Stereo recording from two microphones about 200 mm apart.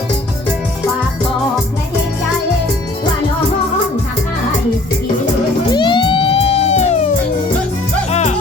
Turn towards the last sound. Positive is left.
turn(degrees=35)  # may be behind; listen again after turning